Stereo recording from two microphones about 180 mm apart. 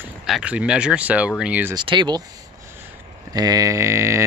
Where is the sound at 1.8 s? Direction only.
25° right (ahead or behind).